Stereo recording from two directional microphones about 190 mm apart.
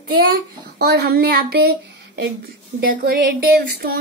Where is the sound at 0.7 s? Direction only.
60° right (ahead or behind).